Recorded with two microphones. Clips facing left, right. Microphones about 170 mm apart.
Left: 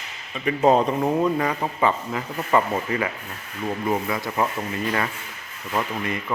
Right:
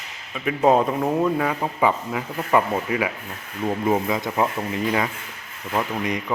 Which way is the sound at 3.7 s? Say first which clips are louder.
Right 3 dB; 20° right (ahead or behind).